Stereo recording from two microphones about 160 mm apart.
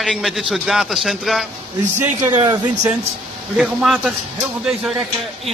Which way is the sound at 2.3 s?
25° right (ahead or behind).